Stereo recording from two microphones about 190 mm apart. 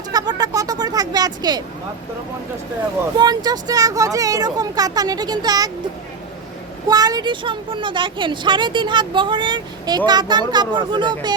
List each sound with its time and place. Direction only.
0.1 s a sound: 20° right (ahead or behind)
3.2 s a woman's voice: 20° right (ahead or behind)
6.8 s a woman's voice: 20° right (ahead or behind)